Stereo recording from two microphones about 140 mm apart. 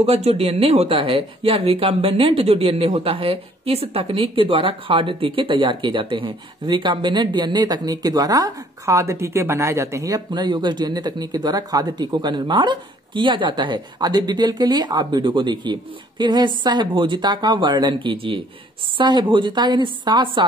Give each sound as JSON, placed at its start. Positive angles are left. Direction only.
{"t": 0.0, "sound": "speech", "side_deg": -45}